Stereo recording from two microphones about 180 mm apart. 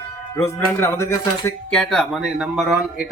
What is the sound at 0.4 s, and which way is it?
Speech, 15° left (ahead or behind).